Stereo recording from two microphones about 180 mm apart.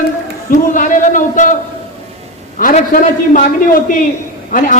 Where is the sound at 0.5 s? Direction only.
50° left (ahead or behind).